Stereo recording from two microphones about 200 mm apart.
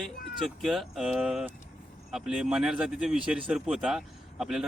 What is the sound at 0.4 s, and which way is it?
Speech, centre (ahead or behind).